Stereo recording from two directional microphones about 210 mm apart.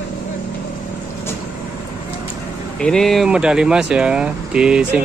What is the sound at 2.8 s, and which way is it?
Speech, centre (ahead or behind).